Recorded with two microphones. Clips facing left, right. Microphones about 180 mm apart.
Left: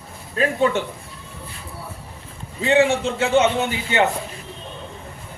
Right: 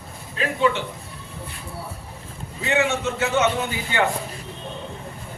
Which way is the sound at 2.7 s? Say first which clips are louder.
Left 5 dB; 30° left (ahead or behind).